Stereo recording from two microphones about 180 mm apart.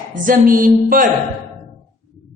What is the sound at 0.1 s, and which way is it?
Speech, 50° right (ahead or behind).